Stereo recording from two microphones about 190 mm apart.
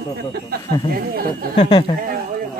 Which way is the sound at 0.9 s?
50° right (ahead or behind).